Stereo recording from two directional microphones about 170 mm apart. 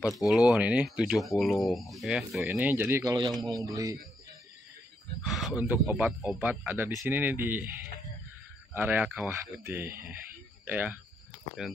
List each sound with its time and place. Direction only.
0.0 s speech: centre (ahead or behind)
2.4 s speech: 15° right (ahead or behind)
5.2 s speech: centre (ahead or behind)